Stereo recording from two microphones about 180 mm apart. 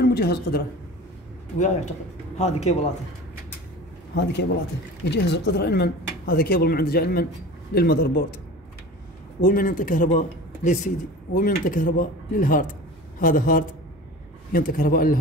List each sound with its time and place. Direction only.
0.0 s a woman's voice: 65° left (ahead or behind)
1.6 s a man's voice: 40° left (ahead or behind)
4.1 s a man's voice: 75° left (ahead or behind); by 8.3 s 55° left (ahead or behind)
9.4 s speech: 50° left (ahead or behind)